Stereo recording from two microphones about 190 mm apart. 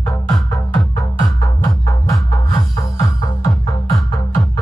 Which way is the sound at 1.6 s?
20° left (ahead or behind).